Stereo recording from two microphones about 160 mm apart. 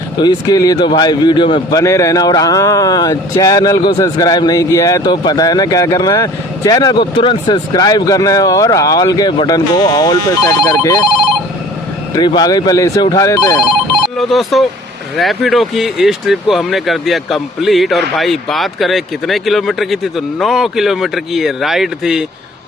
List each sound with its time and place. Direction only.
0.2 s speech: 25° left (ahead or behind)
1.7 s speech: 20° left (ahead or behind)
12.1 s speech: 25° left (ahead or behind)
14.2 s speech: centre (ahead or behind)